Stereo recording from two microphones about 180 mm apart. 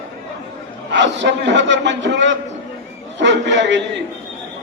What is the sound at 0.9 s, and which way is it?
A man's voice, 80° right.